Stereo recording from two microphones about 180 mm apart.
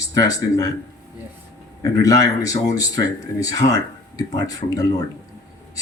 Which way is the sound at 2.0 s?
20° left (ahead or behind).